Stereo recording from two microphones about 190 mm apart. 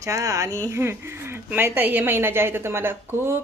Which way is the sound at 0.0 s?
15° right (ahead or behind).